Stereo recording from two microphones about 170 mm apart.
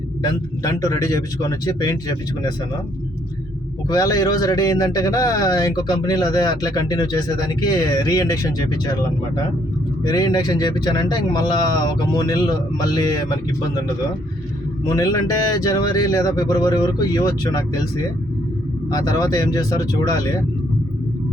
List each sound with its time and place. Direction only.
0.2 s speech: 20° left (ahead or behind)
3.8 s speech: 20° left (ahead or behind)
10.0 s speech: 25° left (ahead or behind)